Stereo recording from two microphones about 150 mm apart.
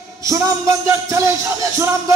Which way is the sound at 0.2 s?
20° right (ahead or behind).